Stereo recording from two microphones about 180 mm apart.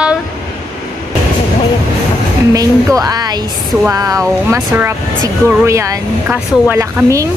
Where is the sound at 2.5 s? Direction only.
20° right (ahead or behind).